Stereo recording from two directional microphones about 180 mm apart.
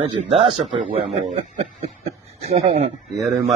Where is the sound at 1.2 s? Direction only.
40° right (ahead or behind).